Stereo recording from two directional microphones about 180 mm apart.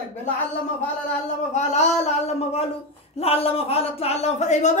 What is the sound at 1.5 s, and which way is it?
A woman's voice, 40° left (ahead or behind).